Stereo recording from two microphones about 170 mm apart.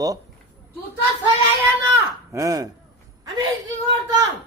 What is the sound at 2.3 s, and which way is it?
Speech, 20° right (ahead or behind).